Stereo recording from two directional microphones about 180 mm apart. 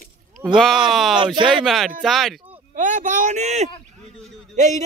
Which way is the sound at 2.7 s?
45° right (ahead or behind).